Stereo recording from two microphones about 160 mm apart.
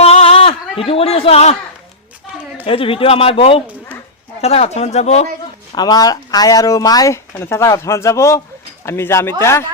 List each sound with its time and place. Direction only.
0.0 s a sound: 40° left (ahead or behind)
0.9 s speech: 40° left (ahead or behind)
2.6 s speech: 35° left (ahead or behind)
5.7 s speech: 25° left (ahead or behind)